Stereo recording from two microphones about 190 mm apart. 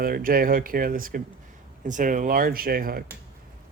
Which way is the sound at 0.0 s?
50° right (ahead or behind).